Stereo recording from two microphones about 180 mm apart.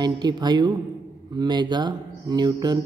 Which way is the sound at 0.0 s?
25° right (ahead or behind).